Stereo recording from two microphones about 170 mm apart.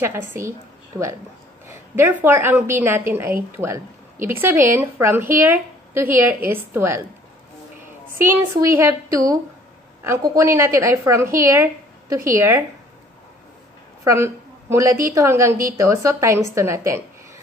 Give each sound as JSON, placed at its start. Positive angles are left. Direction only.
{"t": 0.0, "sound": "a woman's voice", "side_deg": -15}
{"t": 1.7, "sound": "a sound", "side_deg": -15}
{"t": 2.2, "sound": "speech", "side_deg": -15}
{"t": 8.1, "sound": "speech", "side_deg": -15}
{"t": 14.0, "sound": "a woman's voice", "side_deg": -15}